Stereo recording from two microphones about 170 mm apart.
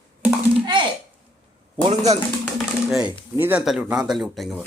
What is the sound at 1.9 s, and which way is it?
Speech, 40° right (ahead or behind).